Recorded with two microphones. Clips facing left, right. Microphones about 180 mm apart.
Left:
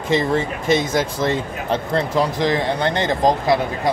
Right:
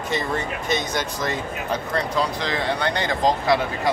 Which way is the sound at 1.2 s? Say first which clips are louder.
Left 5 dB; 25° left (ahead or behind).